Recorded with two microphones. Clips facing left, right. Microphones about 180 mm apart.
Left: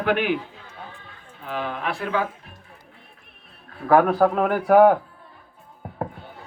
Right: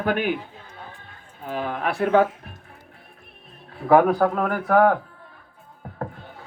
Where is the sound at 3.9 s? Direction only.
Centre (ahead or behind).